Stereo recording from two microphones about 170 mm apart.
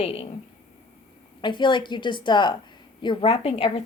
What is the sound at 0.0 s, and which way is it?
Speech, 35° left (ahead or behind).